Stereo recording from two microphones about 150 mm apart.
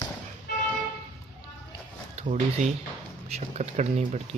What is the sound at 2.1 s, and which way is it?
Speech, 50° right (ahead or behind).